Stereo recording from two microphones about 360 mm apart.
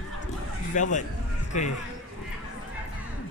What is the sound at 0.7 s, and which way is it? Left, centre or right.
Speech, left.